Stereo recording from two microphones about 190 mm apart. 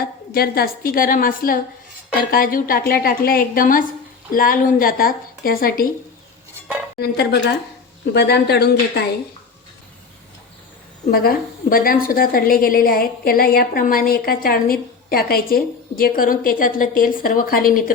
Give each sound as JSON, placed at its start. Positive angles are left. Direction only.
{"t": 0.3, "sound": "a woman's voice", "side_deg": 50}
{"t": 7.0, "sound": "speech", "side_deg": 55}
{"t": 11.1, "sound": "a woman's voice", "side_deg": 50}